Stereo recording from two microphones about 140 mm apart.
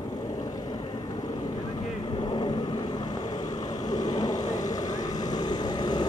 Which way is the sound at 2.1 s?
30° left (ahead or behind).